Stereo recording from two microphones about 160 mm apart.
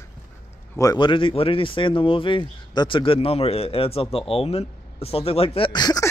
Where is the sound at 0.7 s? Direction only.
25° left (ahead or behind).